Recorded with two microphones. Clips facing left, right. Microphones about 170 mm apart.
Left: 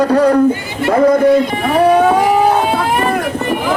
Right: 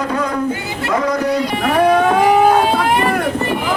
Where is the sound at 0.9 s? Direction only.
55° left (ahead or behind).